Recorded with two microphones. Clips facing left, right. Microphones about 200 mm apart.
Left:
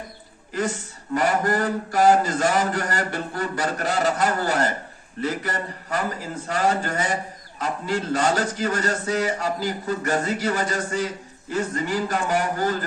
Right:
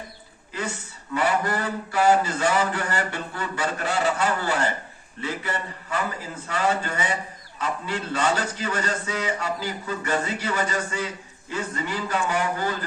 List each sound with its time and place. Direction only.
1.1 s a man's voice: 45° left (ahead or behind)